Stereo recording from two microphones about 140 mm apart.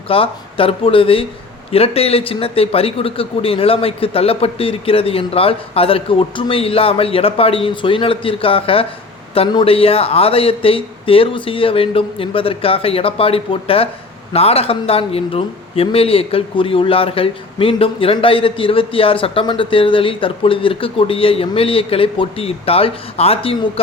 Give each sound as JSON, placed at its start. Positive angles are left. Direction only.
{"t": 0.1, "sound": "speech", "side_deg": 40}